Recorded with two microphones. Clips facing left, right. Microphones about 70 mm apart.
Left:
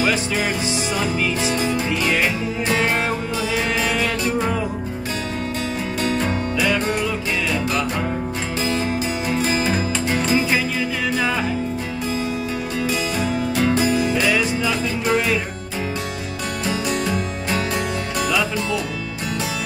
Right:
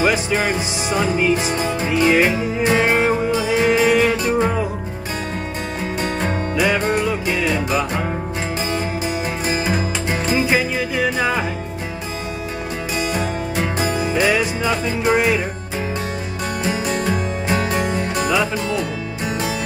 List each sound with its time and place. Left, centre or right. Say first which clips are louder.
0.0 s music: right 3 dB; right
6.6 s music: right 3 dB; right
9.5 s music: even; centre
13.7 s music: left 2 dB; right
14.1 s music: right 2 dB; right
16.6 s music: right 1 dB; right